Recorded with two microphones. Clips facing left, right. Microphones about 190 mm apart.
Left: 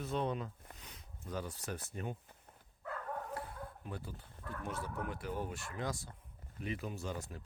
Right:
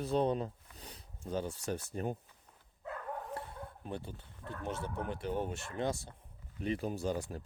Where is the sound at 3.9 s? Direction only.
25° right (ahead or behind).